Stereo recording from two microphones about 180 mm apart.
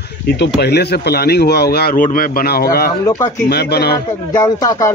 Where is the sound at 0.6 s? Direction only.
65° left (ahead or behind).